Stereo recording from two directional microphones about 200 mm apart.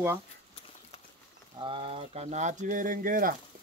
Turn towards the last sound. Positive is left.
turn(degrees=-45)  # may be behind; listen again after turning